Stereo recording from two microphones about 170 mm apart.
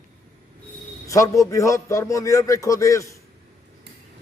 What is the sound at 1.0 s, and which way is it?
A man's voice, 20° left (ahead or behind).